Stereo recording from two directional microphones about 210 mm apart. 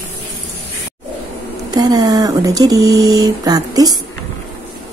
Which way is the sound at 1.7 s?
20° right (ahead or behind).